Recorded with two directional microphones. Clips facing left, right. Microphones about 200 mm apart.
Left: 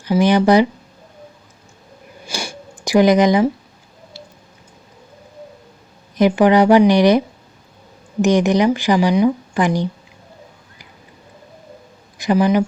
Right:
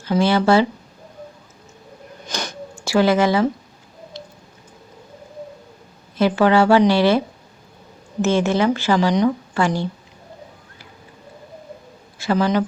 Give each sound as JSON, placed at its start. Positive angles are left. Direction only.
{"t": 0.0, "sound": "speech", "side_deg": 15}
{"t": 2.2, "sound": "sniff", "side_deg": 10}
{"t": 4.1, "sound": "a sound", "side_deg": 10}
{"t": 6.1, "sound": "speech", "side_deg": 15}
{"t": 8.2, "sound": "speech", "side_deg": 15}
{"t": 12.1, "sound": "speech", "side_deg": 15}